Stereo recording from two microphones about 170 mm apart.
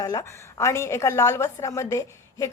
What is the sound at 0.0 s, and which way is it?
A woman's voice, 20° left (ahead or behind).